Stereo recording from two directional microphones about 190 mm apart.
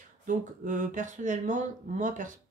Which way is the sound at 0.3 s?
40° right (ahead or behind).